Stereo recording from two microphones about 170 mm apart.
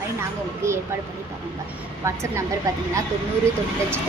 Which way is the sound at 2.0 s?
15° right (ahead or behind).